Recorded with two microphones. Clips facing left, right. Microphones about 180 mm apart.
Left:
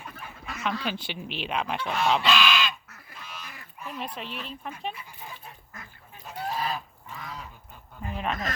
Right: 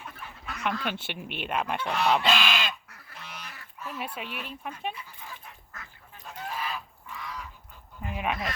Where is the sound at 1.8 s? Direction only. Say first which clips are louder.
Even; 70° right (ahead or behind).